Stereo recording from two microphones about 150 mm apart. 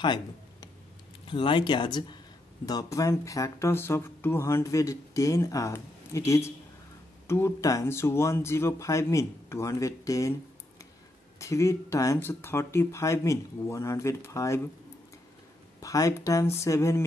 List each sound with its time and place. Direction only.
0.0 s a sound: 30° left (ahead or behind)
1.2 s speech: 35° left (ahead or behind)
11.3 s speech: 20° left (ahead or behind)
15.8 s speech: 25° left (ahead or behind)